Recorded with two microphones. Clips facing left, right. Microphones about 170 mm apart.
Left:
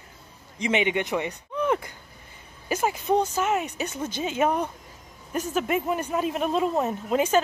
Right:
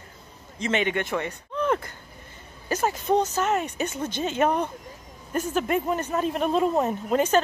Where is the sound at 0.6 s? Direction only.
15° left (ahead or behind).